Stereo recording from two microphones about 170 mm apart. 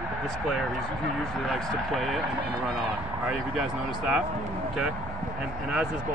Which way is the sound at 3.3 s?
Centre (ahead or behind).